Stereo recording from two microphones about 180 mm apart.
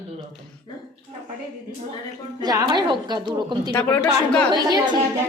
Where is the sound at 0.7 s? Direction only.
25° left (ahead or behind).